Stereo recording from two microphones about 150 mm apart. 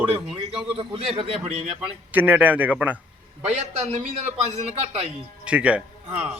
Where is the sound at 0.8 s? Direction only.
40° right (ahead or behind).